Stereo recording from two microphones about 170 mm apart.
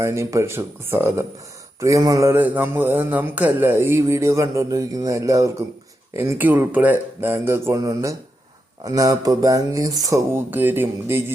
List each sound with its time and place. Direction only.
0.0 s a man's voice: 15° right (ahead or behind)